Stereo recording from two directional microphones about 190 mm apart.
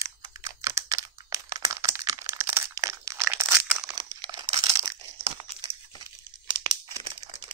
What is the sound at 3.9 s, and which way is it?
Crumpling, 20° right (ahead or behind).